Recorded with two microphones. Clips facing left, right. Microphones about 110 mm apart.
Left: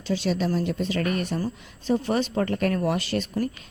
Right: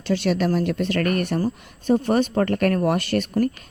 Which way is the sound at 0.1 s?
65° right (ahead or behind).